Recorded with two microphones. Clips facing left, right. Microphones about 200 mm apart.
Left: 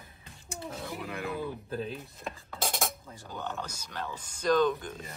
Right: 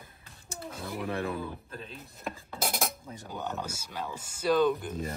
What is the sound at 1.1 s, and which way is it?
Speech, 30° right (ahead or behind).